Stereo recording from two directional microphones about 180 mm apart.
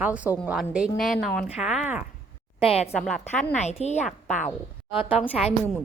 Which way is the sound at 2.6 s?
35° left (ahead or behind).